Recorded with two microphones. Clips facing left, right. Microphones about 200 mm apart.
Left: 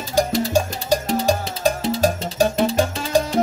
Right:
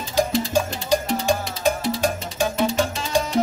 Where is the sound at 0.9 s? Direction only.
35° left (ahead or behind).